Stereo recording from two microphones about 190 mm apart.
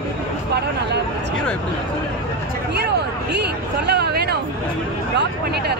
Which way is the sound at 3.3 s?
60° right (ahead or behind).